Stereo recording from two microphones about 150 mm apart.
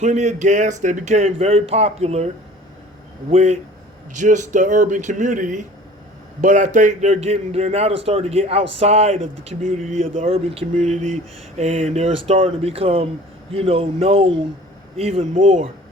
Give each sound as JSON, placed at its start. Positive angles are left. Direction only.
{"t": 0.0, "sound": "a man's voice", "side_deg": -50}